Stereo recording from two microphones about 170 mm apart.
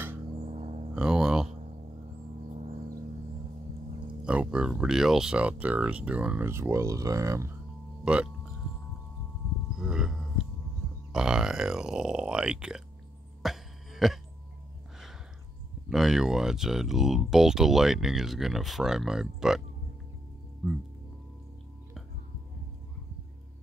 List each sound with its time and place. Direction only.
0.4 s a sound: 40° right (ahead or behind)
0.9 s music: 5° right (ahead or behind)
2.5 s gong: 40° right (ahead or behind)
4.2 s speech: 5° right (ahead or behind)
8.0 s speech: 5° right (ahead or behind)
9.8 s livestock: 5° right (ahead or behind)
11.1 s grunt: 5° right (ahead or behind)
13.4 s a sound: centre (ahead or behind)
15.9 s speech: centre (ahead or behind)